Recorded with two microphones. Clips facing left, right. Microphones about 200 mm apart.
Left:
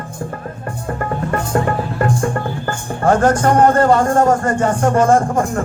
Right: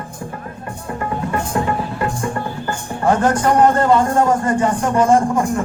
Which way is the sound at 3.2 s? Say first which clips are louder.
Left 1 dB; 45° left (ahead or behind).